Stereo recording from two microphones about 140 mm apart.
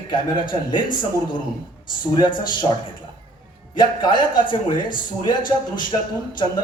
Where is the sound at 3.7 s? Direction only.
35° left (ahead or behind).